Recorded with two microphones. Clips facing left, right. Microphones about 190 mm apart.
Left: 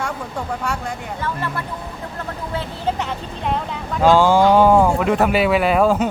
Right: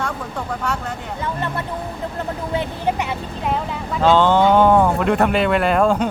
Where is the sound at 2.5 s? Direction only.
15° right (ahead or behind).